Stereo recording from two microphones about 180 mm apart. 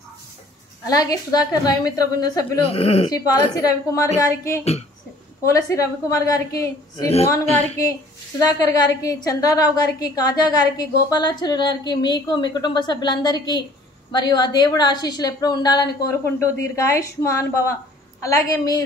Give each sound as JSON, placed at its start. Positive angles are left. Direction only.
{"t": 0.8, "sound": "a woman's voice", "side_deg": 20}
{"t": 2.7, "sound": "speech", "side_deg": 35}
{"t": 3.5, "sound": "a woman's voice", "side_deg": 15}
{"t": 8.5, "sound": "a woman's voice", "side_deg": 20}